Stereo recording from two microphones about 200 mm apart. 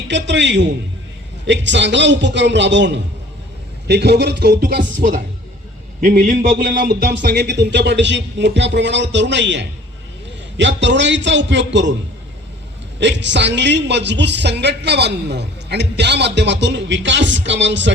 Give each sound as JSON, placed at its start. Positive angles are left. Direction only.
{"t": 0.1, "sound": "a man's voice", "side_deg": -60}
{"t": 13.0, "sound": "a man's voice", "side_deg": -60}